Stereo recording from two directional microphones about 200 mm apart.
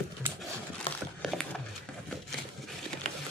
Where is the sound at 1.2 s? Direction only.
Centre (ahead or behind).